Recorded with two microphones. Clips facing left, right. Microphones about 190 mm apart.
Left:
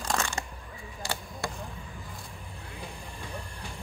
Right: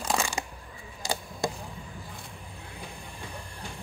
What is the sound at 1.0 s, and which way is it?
Chop, 15° right (ahead or behind).